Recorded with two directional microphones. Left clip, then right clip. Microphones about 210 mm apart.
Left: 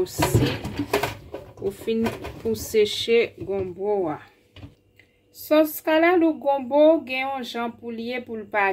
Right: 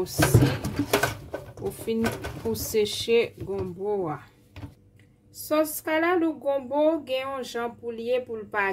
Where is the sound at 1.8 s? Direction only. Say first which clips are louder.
Left 1 dB; 20° right (ahead or behind).